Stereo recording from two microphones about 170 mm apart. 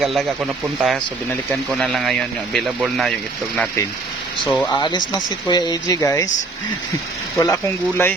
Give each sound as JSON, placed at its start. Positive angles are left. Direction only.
{"t": 0.0, "sound": "speech", "side_deg": 0}
{"t": 4.4, "sound": "speech", "side_deg": 10}
{"t": 4.7, "sound": "speech", "side_deg": 25}
{"t": 7.3, "sound": "speech", "side_deg": 15}